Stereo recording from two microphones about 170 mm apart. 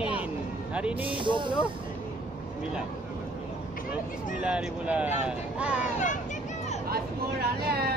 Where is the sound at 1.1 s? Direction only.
30° right (ahead or behind).